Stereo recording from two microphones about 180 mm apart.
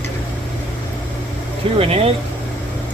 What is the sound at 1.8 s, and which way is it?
Speech, 35° right (ahead or behind).